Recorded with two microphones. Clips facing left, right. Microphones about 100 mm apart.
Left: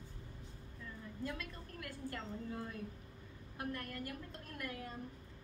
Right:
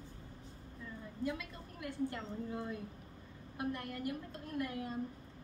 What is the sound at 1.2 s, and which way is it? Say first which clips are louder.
A woman's voice: right 5 dB; 20° right (ahead or behind).